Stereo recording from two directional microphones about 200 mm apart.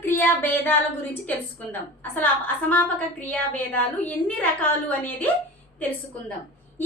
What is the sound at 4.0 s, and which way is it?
Child singing, 5° left (ahead or behind).